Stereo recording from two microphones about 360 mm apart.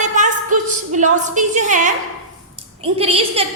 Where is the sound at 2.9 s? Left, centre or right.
Centre.